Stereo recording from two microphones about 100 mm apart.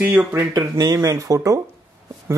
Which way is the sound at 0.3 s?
30° right (ahead or behind).